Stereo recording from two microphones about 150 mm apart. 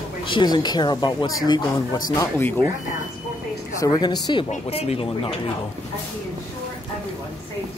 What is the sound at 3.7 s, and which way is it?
Speech, 25° left (ahead or behind).